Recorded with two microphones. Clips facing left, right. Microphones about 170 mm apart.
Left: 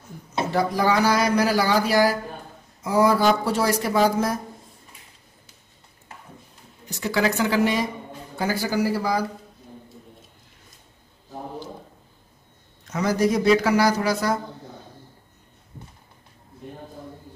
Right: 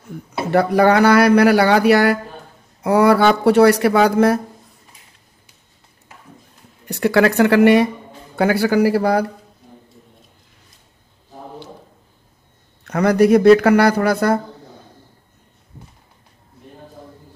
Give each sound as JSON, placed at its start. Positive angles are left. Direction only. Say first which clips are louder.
{"t": 0.5, "sound": "speech", "louder": "right 8 dB", "side_deg": -65}
{"t": 6.9, "sound": "speech", "louder": "right 8 dB", "side_deg": -60}
{"t": 12.8, "sound": "speech", "louder": "right 8 dB", "side_deg": -60}